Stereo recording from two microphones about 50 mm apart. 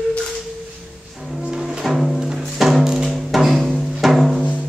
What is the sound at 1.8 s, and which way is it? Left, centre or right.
Music, centre.